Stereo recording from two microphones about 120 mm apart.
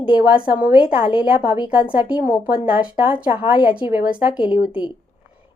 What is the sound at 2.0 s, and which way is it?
A woman's voice, 10° right (ahead or behind).